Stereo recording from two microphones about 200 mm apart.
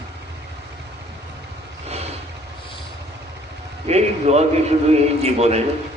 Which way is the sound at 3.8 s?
30° right (ahead or behind).